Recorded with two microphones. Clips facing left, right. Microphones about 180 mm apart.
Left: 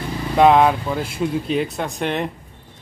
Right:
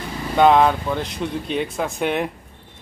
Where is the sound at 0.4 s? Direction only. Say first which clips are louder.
Left 1 dB; centre (ahead or behind).